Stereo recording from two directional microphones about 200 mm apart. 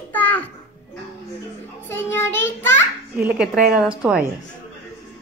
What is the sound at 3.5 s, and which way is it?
Speech, 40° right (ahead or behind).